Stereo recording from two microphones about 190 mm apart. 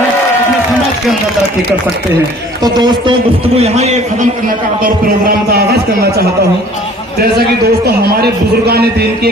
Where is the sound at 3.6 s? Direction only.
35° right (ahead or behind).